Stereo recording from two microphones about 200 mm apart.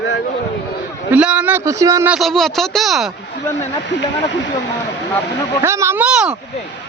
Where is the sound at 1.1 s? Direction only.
5° right (ahead or behind).